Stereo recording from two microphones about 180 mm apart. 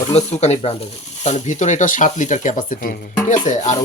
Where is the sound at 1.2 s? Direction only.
40° left (ahead or behind).